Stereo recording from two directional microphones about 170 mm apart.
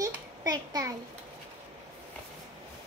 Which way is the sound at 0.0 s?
20° right (ahead or behind).